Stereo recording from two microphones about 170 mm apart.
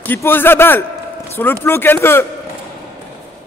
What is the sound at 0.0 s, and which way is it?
A man's voice, 10° left (ahead or behind).